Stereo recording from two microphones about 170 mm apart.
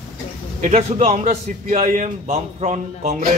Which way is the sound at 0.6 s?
40° right (ahead or behind).